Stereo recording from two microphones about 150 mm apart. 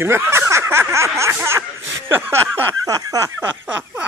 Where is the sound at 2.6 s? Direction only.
25° right (ahead or behind).